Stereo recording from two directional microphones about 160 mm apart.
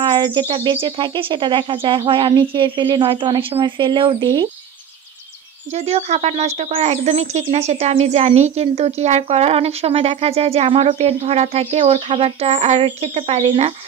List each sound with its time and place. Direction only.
0.0 s speech: 30° right (ahead or behind)
5.7 s speech: 45° right (ahead or behind)